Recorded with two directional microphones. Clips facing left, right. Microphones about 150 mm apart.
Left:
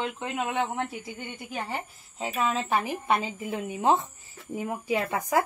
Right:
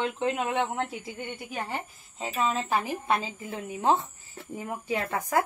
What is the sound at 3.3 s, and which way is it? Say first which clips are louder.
A woman's voice: left 4 dB; 15° left (ahead or behind).